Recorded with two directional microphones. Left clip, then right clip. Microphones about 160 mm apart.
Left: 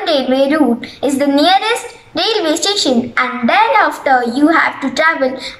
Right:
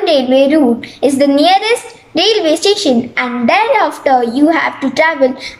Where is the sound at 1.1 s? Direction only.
25° right (ahead or behind).